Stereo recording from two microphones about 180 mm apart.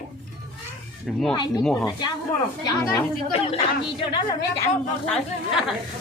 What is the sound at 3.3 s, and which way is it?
A woman's voice, 30° left (ahead or behind).